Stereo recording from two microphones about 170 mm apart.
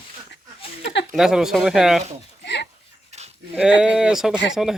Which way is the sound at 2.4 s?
90° left.